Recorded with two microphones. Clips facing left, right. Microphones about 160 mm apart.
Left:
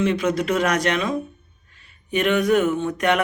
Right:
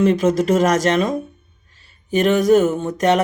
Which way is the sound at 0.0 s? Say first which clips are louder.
Right 5 dB; 45° right (ahead or behind).